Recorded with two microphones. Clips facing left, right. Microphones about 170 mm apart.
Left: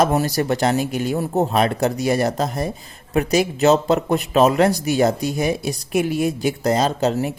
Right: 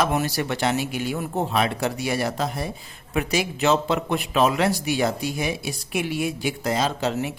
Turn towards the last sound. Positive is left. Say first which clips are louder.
# left 5 dB
turn(degrees=40)  # may be behind; listen again after turning